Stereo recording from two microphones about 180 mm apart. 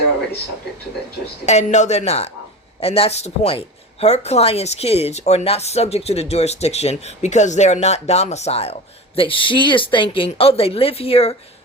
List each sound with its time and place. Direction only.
1.5 s speech: 40° left (ahead or behind)